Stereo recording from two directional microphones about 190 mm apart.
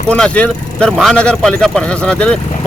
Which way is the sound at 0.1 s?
5° left (ahead or behind).